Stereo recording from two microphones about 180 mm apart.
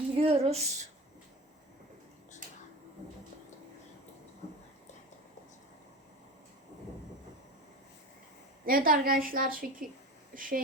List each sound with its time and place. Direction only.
0.2 s speech: 35° right (ahead or behind)
8.6 s a woman's voice: 50° right (ahead or behind)